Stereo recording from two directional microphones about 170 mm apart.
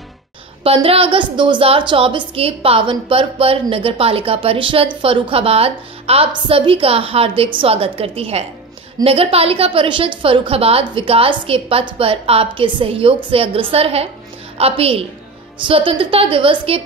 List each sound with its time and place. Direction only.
0.7 s a woman's voice: 35° right (ahead or behind)